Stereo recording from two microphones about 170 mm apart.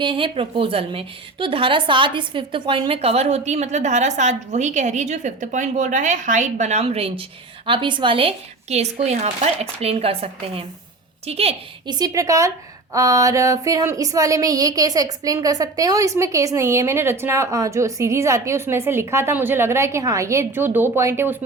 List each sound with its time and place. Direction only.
0.0 s a woman's voice: 30° right (ahead or behind)
11.9 s a woman's voice: 20° right (ahead or behind)